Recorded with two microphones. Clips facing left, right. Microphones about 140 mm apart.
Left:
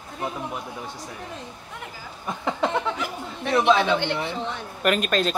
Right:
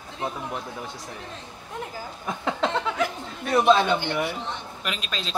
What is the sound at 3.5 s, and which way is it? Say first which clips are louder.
Speech: even; 5° right (ahead or behind).